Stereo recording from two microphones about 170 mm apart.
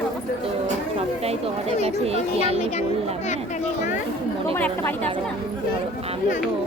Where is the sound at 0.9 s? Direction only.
35° right (ahead or behind).